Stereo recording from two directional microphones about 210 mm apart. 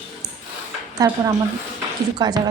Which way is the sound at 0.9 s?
15° right (ahead or behind).